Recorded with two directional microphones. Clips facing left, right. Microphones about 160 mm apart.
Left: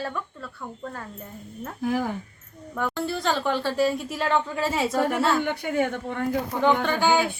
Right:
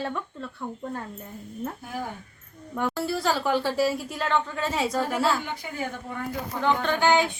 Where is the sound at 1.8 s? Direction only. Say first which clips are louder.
Left 9 dB; 90° left.